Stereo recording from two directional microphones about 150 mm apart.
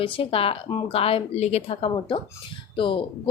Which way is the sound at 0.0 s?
35° left (ahead or behind).